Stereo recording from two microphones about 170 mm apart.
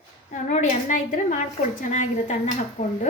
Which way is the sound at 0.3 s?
45° left (ahead or behind).